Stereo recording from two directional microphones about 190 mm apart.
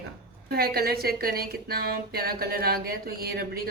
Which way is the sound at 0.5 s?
55° right (ahead or behind).